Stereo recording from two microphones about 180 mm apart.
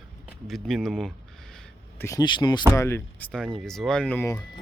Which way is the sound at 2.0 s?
20° left (ahead or behind).